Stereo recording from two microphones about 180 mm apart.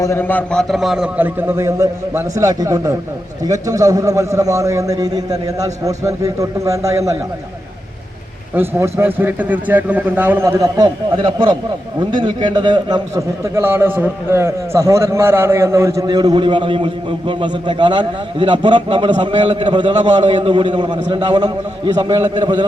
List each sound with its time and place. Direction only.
0.0 s a man's voice: 15° left (ahead or behind); by 7.0 s 20° right (ahead or behind)
8.5 s a man's voice: 15° right (ahead or behind)